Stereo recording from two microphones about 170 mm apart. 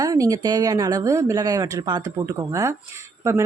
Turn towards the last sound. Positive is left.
turn(degrees=-15)  # may be behind; listen again after turning